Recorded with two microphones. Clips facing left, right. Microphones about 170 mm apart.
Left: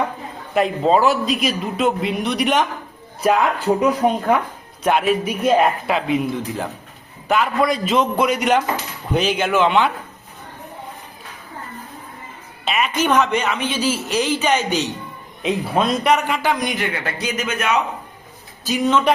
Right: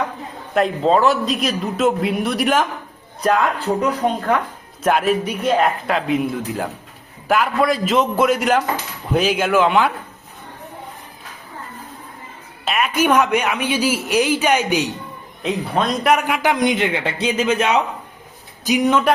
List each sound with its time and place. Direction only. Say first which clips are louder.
0.5 s a man's voice: even; 5° left (ahead or behind)
3.2 s speech: left 1 dB; 10° left (ahead or behind)
4.8 s a man's voice: even; centre (ahead or behind)
5.2 s speech: left 2 dB; 10° left (ahead or behind)
5.9 s a man's voice: even; centre (ahead or behind)
12.6 s speech: right 2 dB; 5° right (ahead or behind)
15.4 s a man's voice: left 1 dB; centre (ahead or behind)
16.1 s a man's voice: right 1 dB; 10° right (ahead or behind); by 17.7 s 30° right (ahead or behind)
18.6 s speech: right 1 dB; 15° right (ahead or behind)